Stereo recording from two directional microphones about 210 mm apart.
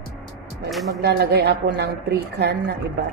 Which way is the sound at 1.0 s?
50° right (ahead or behind).